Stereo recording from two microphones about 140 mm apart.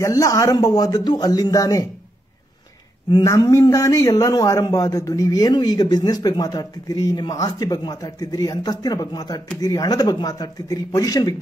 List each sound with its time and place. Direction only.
0.0 s speech: 25° left (ahead or behind)
3.1 s speech: 25° left (ahead or behind)